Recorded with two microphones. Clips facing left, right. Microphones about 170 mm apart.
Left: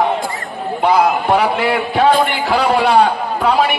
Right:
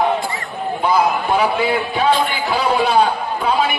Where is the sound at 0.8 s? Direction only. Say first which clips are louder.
Left 3 dB; 75° left (ahead or behind).